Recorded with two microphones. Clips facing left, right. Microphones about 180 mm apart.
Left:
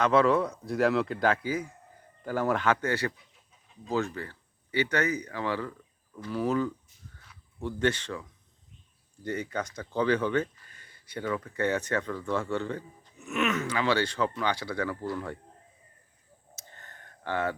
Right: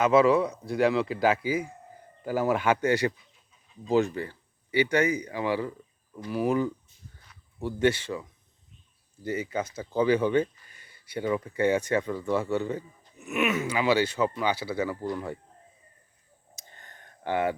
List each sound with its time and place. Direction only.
0.0 s speech: 5° right (ahead or behind)
11.3 s speech: 20° right (ahead or behind)
11.5 s speech: 10° right (ahead or behind)
16.6 s a sound: 15° right (ahead or behind)